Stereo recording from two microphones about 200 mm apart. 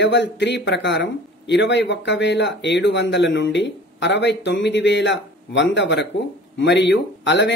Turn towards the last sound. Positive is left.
turn(degrees=65)  # may be behind; listen again after turning